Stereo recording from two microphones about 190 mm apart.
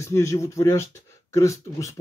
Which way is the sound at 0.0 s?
15° left (ahead or behind).